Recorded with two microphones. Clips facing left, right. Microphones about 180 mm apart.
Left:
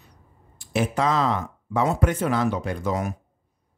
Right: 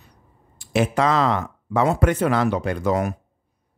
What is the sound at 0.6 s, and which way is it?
Speech, 75° right (ahead or behind).